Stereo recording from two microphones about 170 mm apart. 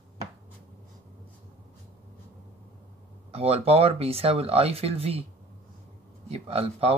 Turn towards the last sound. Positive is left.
turn(degrees=-35)  # may be behind; listen again after turning